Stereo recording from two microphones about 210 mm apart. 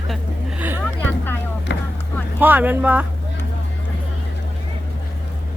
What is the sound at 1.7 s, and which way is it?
Vehicle, 60° left (ahead or behind).